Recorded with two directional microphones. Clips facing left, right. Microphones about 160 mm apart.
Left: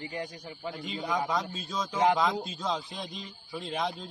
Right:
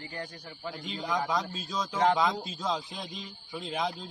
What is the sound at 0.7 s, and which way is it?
Speech, 5° left (ahead or behind).